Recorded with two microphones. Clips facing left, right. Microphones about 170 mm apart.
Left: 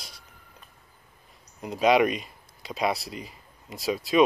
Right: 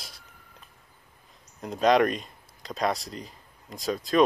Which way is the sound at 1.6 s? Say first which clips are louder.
Even; 5° left (ahead or behind).